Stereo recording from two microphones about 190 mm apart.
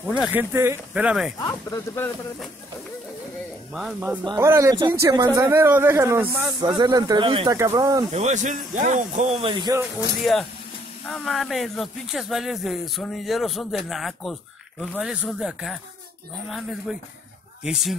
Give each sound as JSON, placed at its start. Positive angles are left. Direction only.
{"t": 0.0, "sound": "a man's voice", "side_deg": -5}
{"t": 1.4, "sound": "speech", "side_deg": 15}
{"t": 3.7, "sound": "speech", "side_deg": -5}
{"t": 4.2, "sound": "a man's voice", "side_deg": -20}
{"t": 6.6, "sound": "speech", "side_deg": -20}
{"t": 8.1, "sound": "speech", "side_deg": -35}
{"t": 10.3, "sound": "speech", "side_deg": 0}